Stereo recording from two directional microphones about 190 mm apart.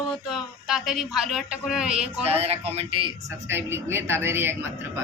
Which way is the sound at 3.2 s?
10° right (ahead or behind).